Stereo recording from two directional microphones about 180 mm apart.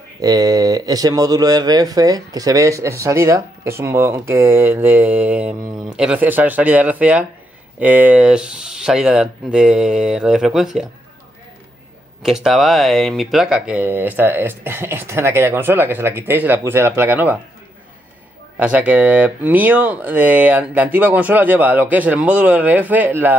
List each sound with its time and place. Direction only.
0.2 s speech: 20° right (ahead or behind); by 10.9 s centre (ahead or behind)
12.2 s speech: centre (ahead or behind)
18.6 s speech: 10° right (ahead or behind)